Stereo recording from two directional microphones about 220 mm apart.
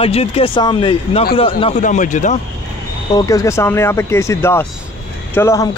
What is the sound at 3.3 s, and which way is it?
Speech, 15° left (ahead or behind).